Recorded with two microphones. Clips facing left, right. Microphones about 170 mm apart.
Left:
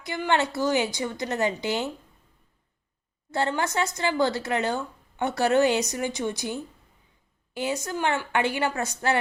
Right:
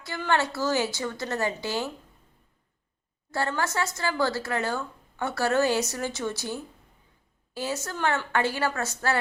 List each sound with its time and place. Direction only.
0.0 s a woman's voice: 15° left (ahead or behind)
3.3 s a woman's voice: 20° left (ahead or behind)